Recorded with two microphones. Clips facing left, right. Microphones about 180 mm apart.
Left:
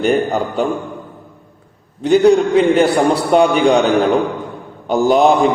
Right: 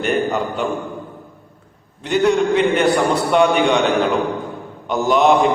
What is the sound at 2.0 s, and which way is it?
A man's voice, 35° left (ahead or behind).